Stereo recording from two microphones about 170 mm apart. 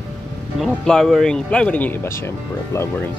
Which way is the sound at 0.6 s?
5° left (ahead or behind).